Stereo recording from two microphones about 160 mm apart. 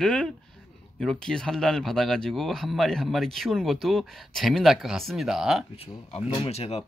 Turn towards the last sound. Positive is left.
turn(degrees=40)  # may be behind; listen again after turning